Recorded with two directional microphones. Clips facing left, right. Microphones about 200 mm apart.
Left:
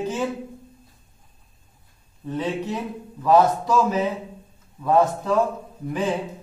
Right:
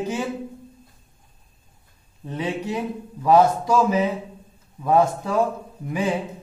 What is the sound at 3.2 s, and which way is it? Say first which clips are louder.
Speech: right 1 dB; 10° right (ahead or behind).